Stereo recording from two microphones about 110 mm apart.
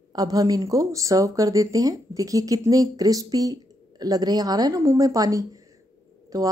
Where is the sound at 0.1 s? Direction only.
35° right (ahead or behind).